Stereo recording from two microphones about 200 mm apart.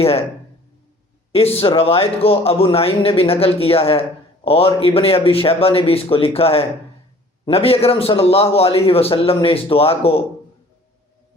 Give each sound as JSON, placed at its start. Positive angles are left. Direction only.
{"t": 0.0, "sound": "a man's voice", "side_deg": 30}
{"t": 1.3, "sound": "a man's voice", "side_deg": 30}